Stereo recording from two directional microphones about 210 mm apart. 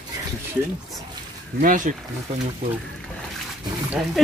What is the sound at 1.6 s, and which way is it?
Speech, 40° right (ahead or behind).